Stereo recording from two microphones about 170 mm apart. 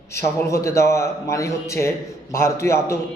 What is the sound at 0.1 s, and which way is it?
Speech, 15° left (ahead or behind).